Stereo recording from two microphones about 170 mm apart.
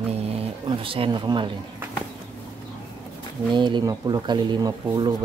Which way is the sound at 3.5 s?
25° right (ahead or behind).